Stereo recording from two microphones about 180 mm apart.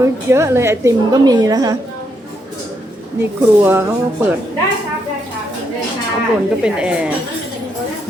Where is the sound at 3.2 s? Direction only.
10° right (ahead or behind).